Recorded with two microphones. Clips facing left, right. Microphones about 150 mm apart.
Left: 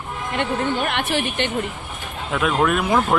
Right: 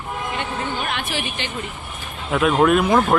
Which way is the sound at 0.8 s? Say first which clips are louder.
Left 4 dB; 60° left (ahead or behind).